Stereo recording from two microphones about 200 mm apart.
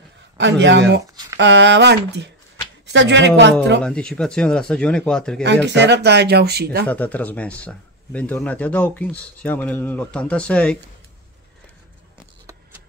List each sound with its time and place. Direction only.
0.4 s speech: 65° right (ahead or behind)
3.8 s speech: 5° left (ahead or behind)
5.4 s speech: 60° right (ahead or behind)
6.9 s a man's voice: 10° left (ahead or behind)